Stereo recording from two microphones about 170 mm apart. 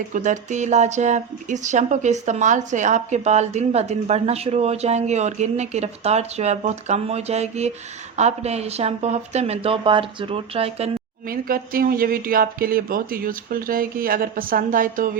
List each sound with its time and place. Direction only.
0.1 s speech: 45° right (ahead or behind)
11.3 s speech: 60° right (ahead or behind)